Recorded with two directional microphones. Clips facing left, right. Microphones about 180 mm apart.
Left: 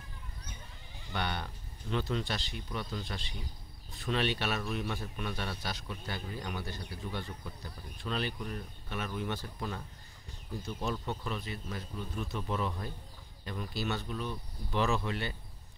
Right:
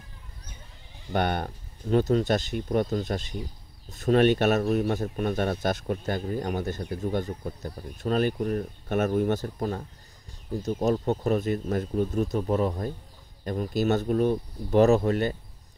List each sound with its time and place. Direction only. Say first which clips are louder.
1.1 s speech: right 10 dB; 50° right (ahead or behind)